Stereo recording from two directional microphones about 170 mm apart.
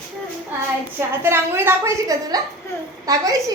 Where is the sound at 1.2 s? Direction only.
15° right (ahead or behind).